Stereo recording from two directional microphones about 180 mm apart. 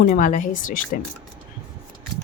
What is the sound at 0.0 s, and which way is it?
Speech, 50° left (ahead or behind).